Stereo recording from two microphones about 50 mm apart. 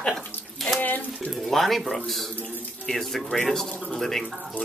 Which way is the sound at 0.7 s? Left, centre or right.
Left.